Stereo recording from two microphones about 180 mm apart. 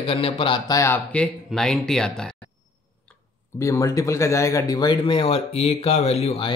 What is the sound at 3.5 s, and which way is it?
A man's voice, 15° left (ahead or behind).